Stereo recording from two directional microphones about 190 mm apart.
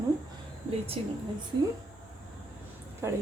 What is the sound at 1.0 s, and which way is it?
Speech, 30° right (ahead or behind).